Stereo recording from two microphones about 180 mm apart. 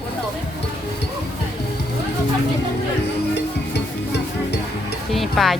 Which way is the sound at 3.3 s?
70° left (ahead or behind).